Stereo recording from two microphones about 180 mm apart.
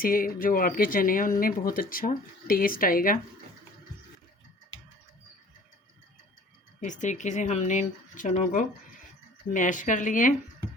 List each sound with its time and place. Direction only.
0.0 s speech: 50° left (ahead or behind)
6.7 s speech: 45° left (ahead or behind)